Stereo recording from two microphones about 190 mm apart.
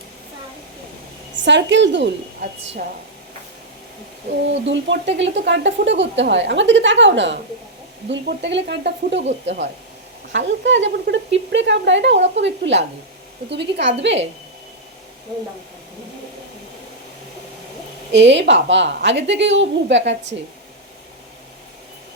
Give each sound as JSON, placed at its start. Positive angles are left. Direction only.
{"t": 1.5, "sound": "speech", "side_deg": -70}
{"t": 4.6, "sound": "speech", "side_deg": -70}
{"t": 9.2, "sound": "speech", "side_deg": -35}
{"t": 10.3, "sound": "speech", "side_deg": -75}
{"t": 18.1, "sound": "speech", "side_deg": -75}